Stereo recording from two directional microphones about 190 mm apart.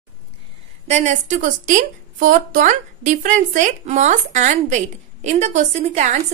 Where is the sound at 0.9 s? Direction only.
40° right (ahead or behind).